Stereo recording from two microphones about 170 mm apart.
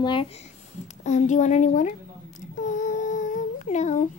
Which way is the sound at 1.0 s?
45° left (ahead or behind).